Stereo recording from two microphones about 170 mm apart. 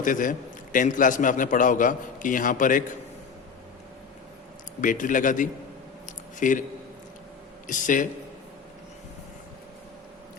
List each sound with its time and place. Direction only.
0.0 s a man's voice: 50° left (ahead or behind)
4.8 s a man's voice: 50° left (ahead or behind)
7.7 s a man's voice: 50° left (ahead or behind)